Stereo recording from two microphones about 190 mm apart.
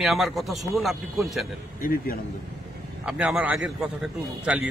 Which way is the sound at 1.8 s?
50° left (ahead or behind).